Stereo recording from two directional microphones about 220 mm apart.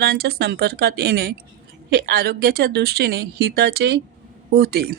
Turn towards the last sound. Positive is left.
turn(degrees=-45)  # may be behind; listen again after turning